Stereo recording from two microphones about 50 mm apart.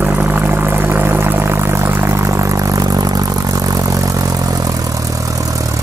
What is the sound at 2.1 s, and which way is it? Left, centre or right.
Didgeridoo, right.